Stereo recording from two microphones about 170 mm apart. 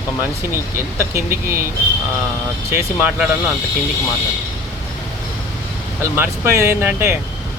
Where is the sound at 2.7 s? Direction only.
10° right (ahead or behind).